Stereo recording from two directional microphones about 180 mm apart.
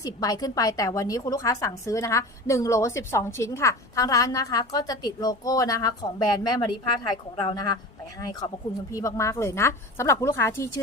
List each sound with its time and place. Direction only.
0.0 s a woman's voice: 20° left (ahead or behind)
8.9 s a woman's voice: 15° left (ahead or behind)